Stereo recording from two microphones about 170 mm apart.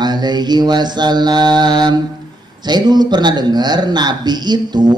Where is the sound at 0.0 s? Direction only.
25° right (ahead or behind).